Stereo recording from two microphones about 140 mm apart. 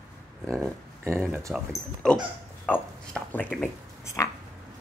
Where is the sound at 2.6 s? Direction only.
10° left (ahead or behind).